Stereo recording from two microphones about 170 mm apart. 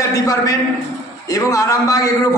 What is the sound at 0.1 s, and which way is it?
A man's voice, 20° left (ahead or behind).